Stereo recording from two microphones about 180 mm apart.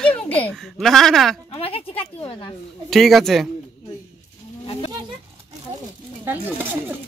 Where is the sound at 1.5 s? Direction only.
30° left (ahead or behind).